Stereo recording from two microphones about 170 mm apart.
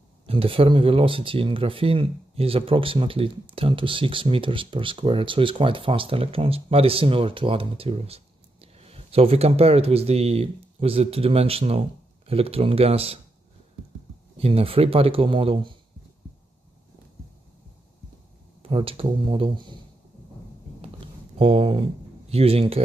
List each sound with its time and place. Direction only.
0.3 s speech: 35° right (ahead or behind)
14.4 s speech: 35° right (ahead or behind)
18.6 s speech: 35° right (ahead or behind)
21.4 s speech: 30° right (ahead or behind)